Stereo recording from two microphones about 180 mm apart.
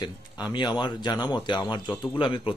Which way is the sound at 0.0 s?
25° left (ahead or behind).